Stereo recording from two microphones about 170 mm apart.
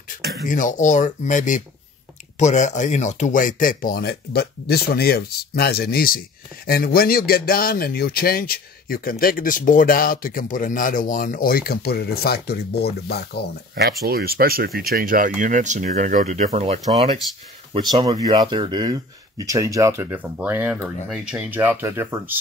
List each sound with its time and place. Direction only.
0.1 s a sound: 50° left (ahead or behind)
0.5 s speech: 50° left (ahead or behind); by 13.5 s 70° left (ahead or behind)
13.8 s speech: 65° right (ahead or behind); by 17.1 s 35° right (ahead or behind)
18.2 s speech: 25° right (ahead or behind)